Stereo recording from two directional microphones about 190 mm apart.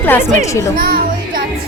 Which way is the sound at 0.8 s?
50° right (ahead or behind).